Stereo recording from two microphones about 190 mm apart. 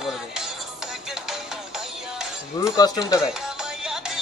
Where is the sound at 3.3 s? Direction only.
5° right (ahead or behind).